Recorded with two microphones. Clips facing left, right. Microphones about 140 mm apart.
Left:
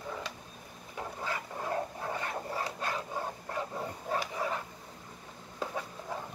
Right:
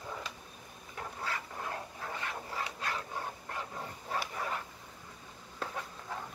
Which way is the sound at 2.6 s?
35° left (ahead or behind).